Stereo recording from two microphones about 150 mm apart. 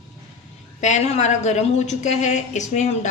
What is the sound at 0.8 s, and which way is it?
A woman's voice, 50° left (ahead or behind).